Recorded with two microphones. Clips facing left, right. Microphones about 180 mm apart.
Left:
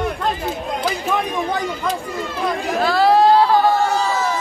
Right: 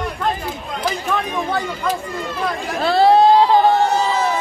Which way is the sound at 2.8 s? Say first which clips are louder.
Right 2 dB; 30° right (ahead or behind).